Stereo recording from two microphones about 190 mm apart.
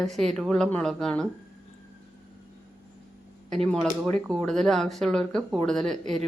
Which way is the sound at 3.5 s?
Centre (ahead or behind).